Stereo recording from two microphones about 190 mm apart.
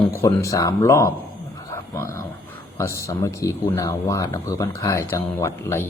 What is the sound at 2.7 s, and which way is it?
A man's voice, 15° left (ahead or behind).